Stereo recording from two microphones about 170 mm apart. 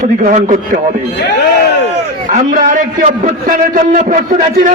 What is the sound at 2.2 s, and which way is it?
Speech, 50° right (ahead or behind).